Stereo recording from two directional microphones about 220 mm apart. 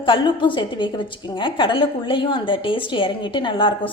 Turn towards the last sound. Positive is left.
turn(degrees=20)  # may be behind; listen again after turning